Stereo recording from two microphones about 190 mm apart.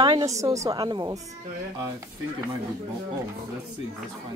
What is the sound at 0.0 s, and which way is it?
A woman's voice, 20° right (ahead or behind).